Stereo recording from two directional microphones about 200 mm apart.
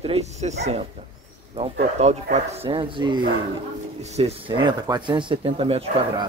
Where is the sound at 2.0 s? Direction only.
35° right (ahead or behind).